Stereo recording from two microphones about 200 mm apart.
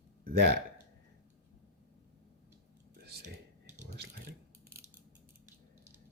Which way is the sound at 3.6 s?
35° right (ahead or behind).